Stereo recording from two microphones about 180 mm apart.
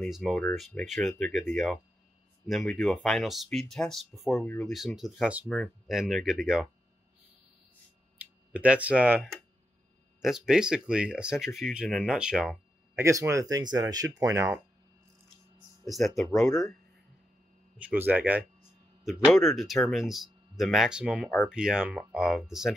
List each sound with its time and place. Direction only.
0.0 s speech: centre (ahead or behind)
8.2 s speech: 5° right (ahead or behind)
12.9 s speech: 15° right (ahead or behind)
15.8 s speech: centre (ahead or behind)
17.7 s speech: 10° right (ahead or behind)